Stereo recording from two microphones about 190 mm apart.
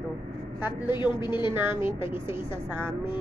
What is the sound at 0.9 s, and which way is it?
Speech, 25° left (ahead or behind).